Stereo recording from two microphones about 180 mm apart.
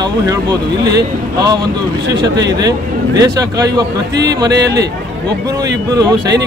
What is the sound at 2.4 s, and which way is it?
Speech, 20° right (ahead or behind).